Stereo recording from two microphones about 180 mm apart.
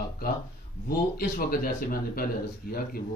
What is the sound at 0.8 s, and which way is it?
A man's voice, 55° left (ahead or behind).